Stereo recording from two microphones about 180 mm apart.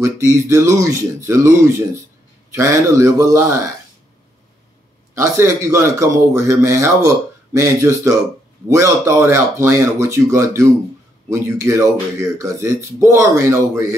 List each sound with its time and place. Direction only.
0.5 s speech: 15° right (ahead or behind)
5.1 s speech: 15° right (ahead or behind)